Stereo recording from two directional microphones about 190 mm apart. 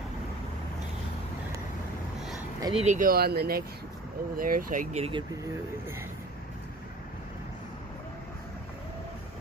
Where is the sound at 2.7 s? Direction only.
40° right (ahead or behind).